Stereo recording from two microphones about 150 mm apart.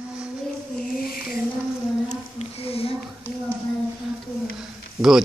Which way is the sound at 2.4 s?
40° left (ahead or behind).